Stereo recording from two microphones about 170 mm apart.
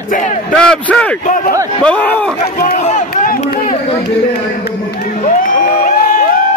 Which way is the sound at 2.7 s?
40° left (ahead or behind).